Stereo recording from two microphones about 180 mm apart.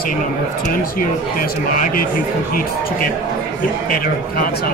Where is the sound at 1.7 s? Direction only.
45° left (ahead or behind).